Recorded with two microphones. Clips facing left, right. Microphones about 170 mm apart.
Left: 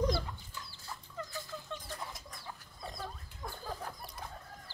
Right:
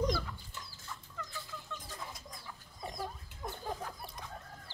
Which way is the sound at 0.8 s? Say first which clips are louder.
Left 4 dB; 35° left (ahead or behind).